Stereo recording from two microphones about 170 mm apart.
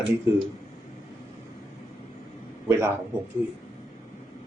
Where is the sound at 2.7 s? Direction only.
15° right (ahead or behind).